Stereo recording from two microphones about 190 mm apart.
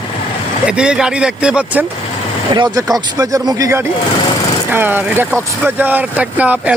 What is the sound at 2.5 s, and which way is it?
Speech, 20° right (ahead or behind).